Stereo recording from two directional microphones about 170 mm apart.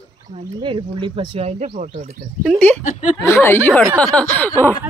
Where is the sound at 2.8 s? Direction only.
45° left (ahead or behind).